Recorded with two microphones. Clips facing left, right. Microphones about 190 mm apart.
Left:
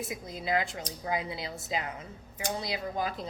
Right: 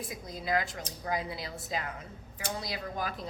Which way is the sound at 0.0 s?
25° left (ahead or behind).